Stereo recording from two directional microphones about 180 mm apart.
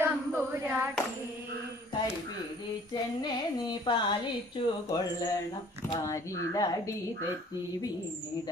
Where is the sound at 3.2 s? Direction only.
25° left (ahead or behind).